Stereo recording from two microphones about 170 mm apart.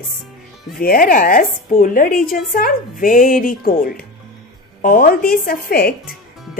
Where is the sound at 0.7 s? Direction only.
60° left (ahead or behind).